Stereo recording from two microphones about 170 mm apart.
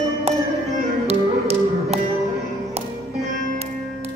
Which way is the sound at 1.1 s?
35° right (ahead or behind).